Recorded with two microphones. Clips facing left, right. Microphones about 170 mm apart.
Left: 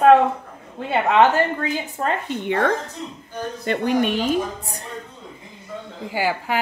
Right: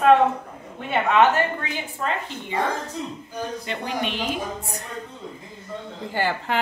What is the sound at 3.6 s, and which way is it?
A woman's voice, 50° left (ahead or behind).